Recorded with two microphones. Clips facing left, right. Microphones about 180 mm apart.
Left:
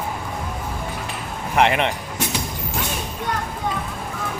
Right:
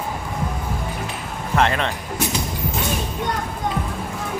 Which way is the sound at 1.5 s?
15° left (ahead or behind).